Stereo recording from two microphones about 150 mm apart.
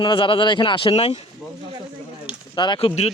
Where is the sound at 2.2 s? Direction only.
30° left (ahead or behind).